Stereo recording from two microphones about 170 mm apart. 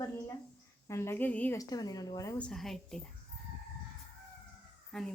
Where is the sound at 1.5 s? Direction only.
20° left (ahead or behind).